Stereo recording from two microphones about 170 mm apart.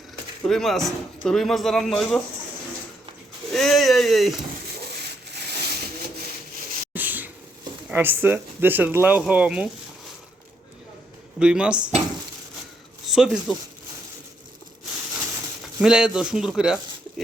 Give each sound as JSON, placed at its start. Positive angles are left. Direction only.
{"t": 0.4, "sound": "speech", "side_deg": 0}
{"t": 3.5, "sound": "speech", "side_deg": 0}
{"t": 4.9, "sound": "rub", "side_deg": -75}
{"t": 6.9, "sound": "a sound", "side_deg": -10}
{"t": 7.9, "sound": "speech", "side_deg": -10}
{"t": 11.3, "sound": "speech", "side_deg": -5}
{"t": 13.1, "sound": "speech", "side_deg": -5}
{"t": 15.8, "sound": "speech", "side_deg": -5}